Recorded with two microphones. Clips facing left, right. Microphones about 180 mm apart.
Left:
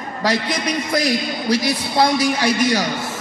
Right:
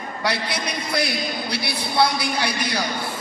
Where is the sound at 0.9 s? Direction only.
90° left.